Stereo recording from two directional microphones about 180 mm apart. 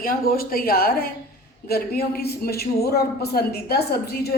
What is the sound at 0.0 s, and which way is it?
A man's voice, 55° left (ahead or behind).